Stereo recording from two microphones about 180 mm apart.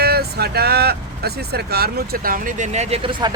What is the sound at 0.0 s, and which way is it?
Speech, 60° right (ahead or behind).